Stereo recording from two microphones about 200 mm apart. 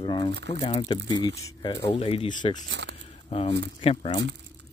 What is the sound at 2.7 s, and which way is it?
Speech, 60° right (ahead or behind).